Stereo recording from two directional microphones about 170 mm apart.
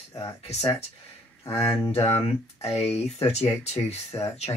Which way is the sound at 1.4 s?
15° left (ahead or behind).